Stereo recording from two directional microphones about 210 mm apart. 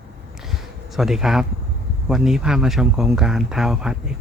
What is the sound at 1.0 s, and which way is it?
Speech, centre (ahead or behind).